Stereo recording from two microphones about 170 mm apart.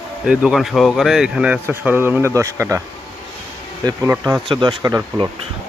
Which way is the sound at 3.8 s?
20° right (ahead or behind).